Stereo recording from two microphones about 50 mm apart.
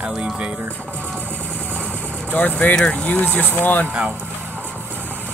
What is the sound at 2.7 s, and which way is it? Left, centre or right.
Speech, centre.